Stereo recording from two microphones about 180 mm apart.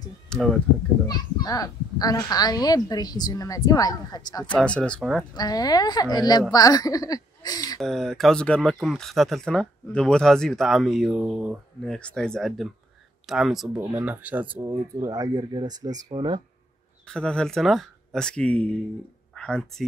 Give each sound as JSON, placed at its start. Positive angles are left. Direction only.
{"t": 0.3, "sound": "speech", "side_deg": 0}
{"t": 1.0, "sound": "a child's voice", "side_deg": 20}
{"t": 4.6, "sound": "speech", "side_deg": 5}
{"t": 5.3, "sound": "a child's voice", "side_deg": 20}
{"t": 7.8, "sound": "speech", "side_deg": 0}
{"t": 17.1, "sound": "speech", "side_deg": 5}